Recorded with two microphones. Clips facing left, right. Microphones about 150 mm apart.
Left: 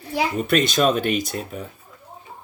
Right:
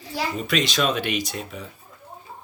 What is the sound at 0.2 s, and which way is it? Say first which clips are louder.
A child's voice: left 4 dB; 55° left (ahead or behind).